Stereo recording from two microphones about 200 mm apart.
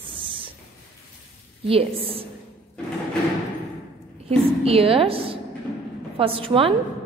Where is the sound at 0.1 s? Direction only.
25° right (ahead or behind).